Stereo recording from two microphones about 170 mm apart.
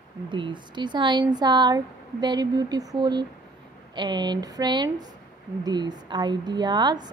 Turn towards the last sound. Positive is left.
turn(degrees=-25)  # may be behind; listen again after turning